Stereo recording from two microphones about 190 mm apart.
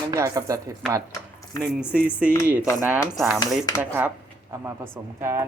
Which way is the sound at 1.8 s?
5° right (ahead or behind).